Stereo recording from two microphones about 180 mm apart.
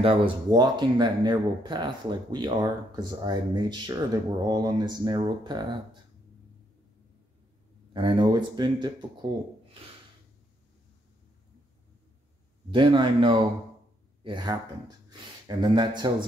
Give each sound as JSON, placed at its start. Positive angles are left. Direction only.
{"t": 0.0, "sound": "speech", "side_deg": -25}
{"t": 7.9, "sound": "speech", "side_deg": -25}
{"t": 12.7, "sound": "speech", "side_deg": -25}